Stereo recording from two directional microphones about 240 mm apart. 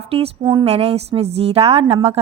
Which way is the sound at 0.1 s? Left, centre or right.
Right.